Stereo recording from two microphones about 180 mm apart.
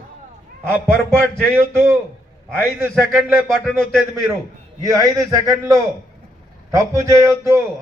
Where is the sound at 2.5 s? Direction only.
10° right (ahead or behind).